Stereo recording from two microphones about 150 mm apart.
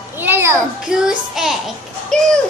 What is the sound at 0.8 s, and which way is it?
Speech, 5° right (ahead or behind).